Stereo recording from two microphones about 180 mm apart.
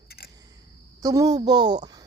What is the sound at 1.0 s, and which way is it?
Speech, 20° right (ahead or behind).